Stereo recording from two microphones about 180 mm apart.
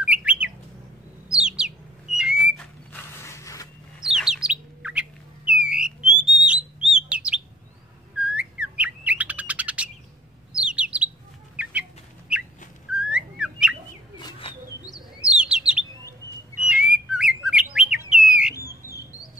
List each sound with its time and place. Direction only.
0.0 s bird: 5° right (ahead or behind)
2.1 s whistle: 5° right (ahead or behind)
2.9 s mechanisms: 15° left (ahead or behind)
4.0 s bird: 5° right (ahead or behind)
5.5 s a sound: 5° right (ahead or behind)
6.3 s bird: 5° right (ahead or behind)
11.5 s chicken: 5° right (ahead or behind)
12.3 s bird: 5° right (ahead or behind)
12.9 s whistling: 5° right (ahead or behind)
14.1 s bird: 25° left (ahead or behind)
15.2 s chirp: 5° right (ahead or behind)
16.6 s bird: 5° right (ahead or behind)